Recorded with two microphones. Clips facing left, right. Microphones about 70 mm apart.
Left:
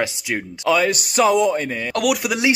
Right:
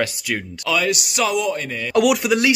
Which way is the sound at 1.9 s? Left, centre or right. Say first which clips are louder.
Right 5 dB; centre.